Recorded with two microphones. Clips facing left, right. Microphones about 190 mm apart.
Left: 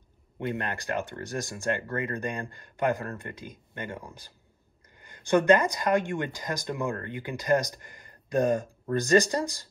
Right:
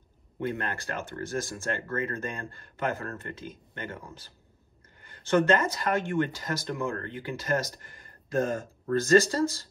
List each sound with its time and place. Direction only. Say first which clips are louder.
0.5 s speech: left 2 dB; 20° left (ahead or behind)